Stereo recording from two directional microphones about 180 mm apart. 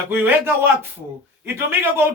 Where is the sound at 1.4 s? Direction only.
15° right (ahead or behind).